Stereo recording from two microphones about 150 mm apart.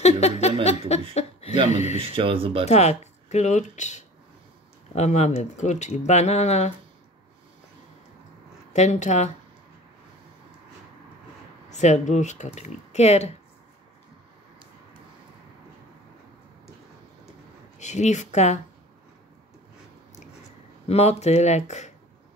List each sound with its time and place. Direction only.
0.0 s a sound: 45° left (ahead or behind)
0.7 s laughter: 45° left (ahead or behind)
1.1 s chuckle: 50° left (ahead or behind)
2.1 s speech: 35° right (ahead or behind)
2.6 s speech: 45° left (ahead or behind)
8.7 s speech: 50° left (ahead or behind)
11.7 s speech: 50° left (ahead or behind)
17.7 s speech: 50° left (ahead or behind)
20.8 s speech: 45° left (ahead or behind)